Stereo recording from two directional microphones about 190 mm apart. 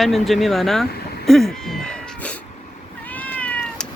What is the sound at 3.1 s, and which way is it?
Cat, 10° left (ahead or behind).